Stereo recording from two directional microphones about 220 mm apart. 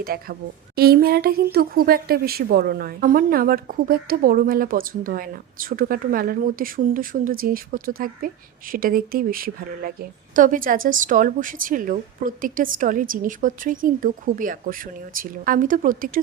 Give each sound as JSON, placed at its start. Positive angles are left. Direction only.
{"t": 0.0, "sound": "a woman's voice", "side_deg": -40}